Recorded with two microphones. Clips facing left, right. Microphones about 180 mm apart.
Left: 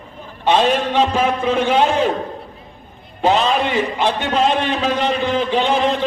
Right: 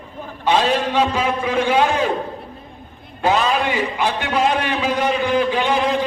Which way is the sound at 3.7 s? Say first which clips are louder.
Left 2 dB; 10° right (ahead or behind).